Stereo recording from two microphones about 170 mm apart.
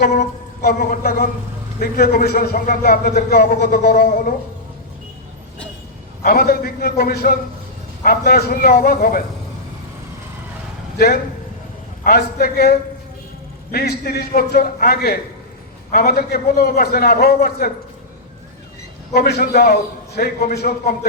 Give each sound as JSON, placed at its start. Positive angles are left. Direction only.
{"t": 0.6, "sound": "a man's voice", "side_deg": 65}
{"t": 6.2, "sound": "a man's voice", "side_deg": 60}
{"t": 10.9, "sound": "a man's voice", "side_deg": 65}
{"t": 19.1, "sound": "a man's voice", "side_deg": 65}